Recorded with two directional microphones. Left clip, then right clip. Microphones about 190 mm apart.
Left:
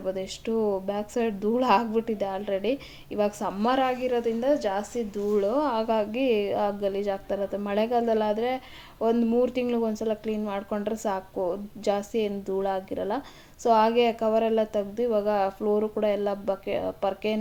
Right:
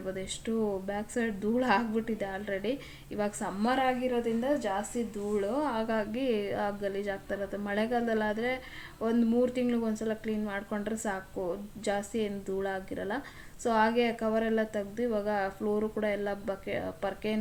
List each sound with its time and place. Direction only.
0.1 s speech: 30° left (ahead or behind)